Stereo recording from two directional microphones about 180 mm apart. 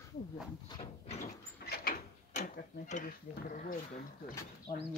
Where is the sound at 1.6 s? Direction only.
55° left (ahead or behind).